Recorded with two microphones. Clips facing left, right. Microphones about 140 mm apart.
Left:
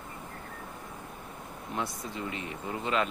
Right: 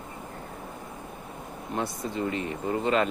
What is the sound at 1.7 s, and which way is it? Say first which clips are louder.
Speech: right 5 dB; 40° right (ahead or behind).